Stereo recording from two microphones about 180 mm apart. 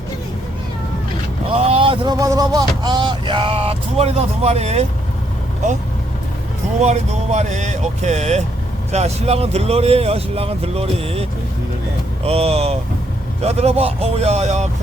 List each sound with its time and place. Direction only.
1.5 s speech: 30° right (ahead or behind)
6.8 s speech: 40° right (ahead or behind)